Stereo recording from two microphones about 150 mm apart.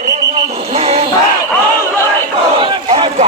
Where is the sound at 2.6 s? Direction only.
35° right (ahead or behind).